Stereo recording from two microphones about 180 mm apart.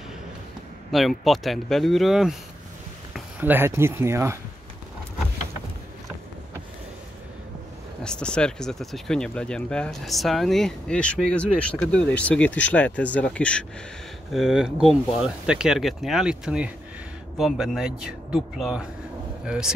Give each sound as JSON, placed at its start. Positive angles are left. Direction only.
{"t": 0.9, "sound": "speech", "side_deg": 0}
{"t": 8.0, "sound": "speech", "side_deg": 5}